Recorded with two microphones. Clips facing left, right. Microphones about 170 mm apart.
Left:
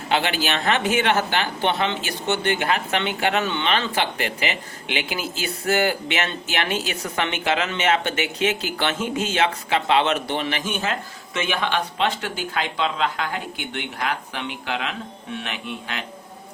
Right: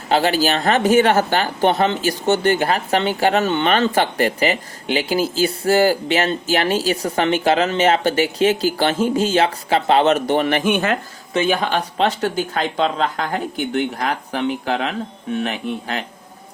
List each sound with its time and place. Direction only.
0.1 s speech: 35° right (ahead or behind); by 10.9 s 60° right (ahead or behind)
11.3 s speech: 40° right (ahead or behind)